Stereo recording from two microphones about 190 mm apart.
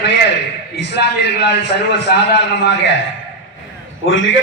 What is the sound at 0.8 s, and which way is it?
A man's voice, 65° left (ahead or behind).